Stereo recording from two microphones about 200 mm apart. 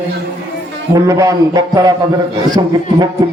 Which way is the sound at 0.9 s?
15° right (ahead or behind).